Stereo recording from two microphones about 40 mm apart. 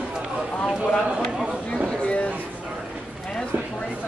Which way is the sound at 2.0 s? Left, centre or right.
Left.